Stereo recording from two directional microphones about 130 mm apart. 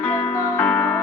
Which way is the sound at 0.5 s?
15° left (ahead or behind).